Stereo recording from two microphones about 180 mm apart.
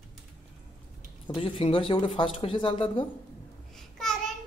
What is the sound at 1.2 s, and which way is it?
Speech, 30° left (ahead or behind).